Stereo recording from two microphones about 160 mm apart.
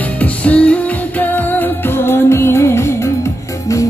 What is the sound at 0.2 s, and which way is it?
Music, 10° left (ahead or behind).